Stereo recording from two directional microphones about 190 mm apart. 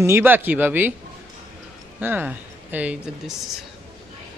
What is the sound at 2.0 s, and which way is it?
Speech, 10° right (ahead or behind).